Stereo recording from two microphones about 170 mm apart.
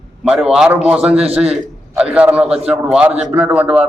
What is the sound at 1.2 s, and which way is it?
Speech, 35° right (ahead or behind).